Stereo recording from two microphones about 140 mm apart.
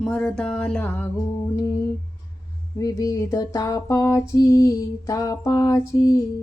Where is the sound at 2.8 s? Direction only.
25° left (ahead or behind).